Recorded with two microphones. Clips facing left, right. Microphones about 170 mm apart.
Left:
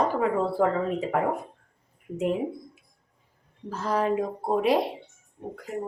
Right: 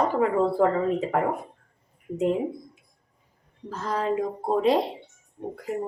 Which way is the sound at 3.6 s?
10° left (ahead or behind).